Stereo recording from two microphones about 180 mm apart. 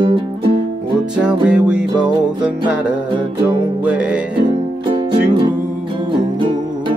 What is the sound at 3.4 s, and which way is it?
Music, 5° right (ahead or behind).